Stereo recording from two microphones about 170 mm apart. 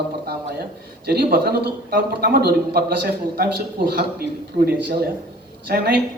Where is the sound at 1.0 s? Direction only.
65° right (ahead or behind).